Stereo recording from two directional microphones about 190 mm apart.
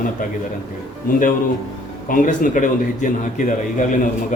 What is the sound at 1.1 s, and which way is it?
A man's voice, 45° left (ahead or behind).